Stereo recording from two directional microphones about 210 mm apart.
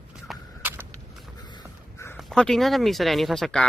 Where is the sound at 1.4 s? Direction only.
20° left (ahead or behind).